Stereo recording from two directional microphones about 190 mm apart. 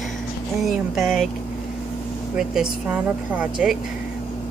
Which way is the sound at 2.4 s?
5° right (ahead or behind).